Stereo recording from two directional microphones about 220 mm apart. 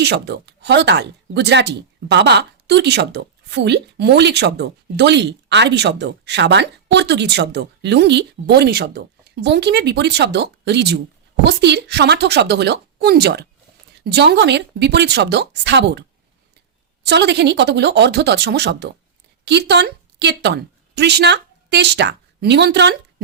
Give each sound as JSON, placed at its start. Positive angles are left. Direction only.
{"t": 0.0, "sound": "a woman's voice", "side_deg": -50}